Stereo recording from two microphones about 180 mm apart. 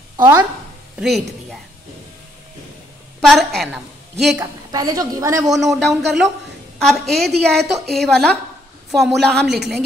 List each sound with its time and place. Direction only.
0.2 s a woman's voice: 20° right (ahead or behind)
0.9 s a woman's voice: centre (ahead or behind)
3.2 s a woman's voice: centre (ahead or behind)
4.4 s a woman's voice: 20° right (ahead or behind)
5.8 s speech: centre (ahead or behind)